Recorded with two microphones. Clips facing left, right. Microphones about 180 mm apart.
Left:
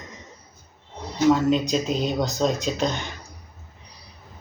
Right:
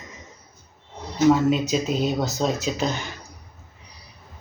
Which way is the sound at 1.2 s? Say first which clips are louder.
Right 1 dB; 5° right (ahead or behind).